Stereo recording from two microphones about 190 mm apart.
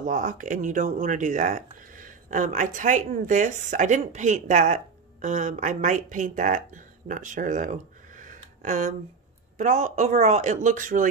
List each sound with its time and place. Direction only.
0.0 s speech: 45° right (ahead or behind)